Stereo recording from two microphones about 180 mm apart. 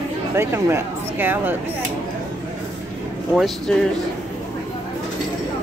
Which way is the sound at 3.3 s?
Centre (ahead or behind).